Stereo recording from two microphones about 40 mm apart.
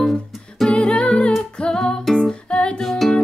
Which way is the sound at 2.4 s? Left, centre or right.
Left.